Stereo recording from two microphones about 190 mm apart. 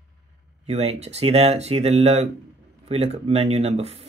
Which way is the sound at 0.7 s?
35° right (ahead or behind).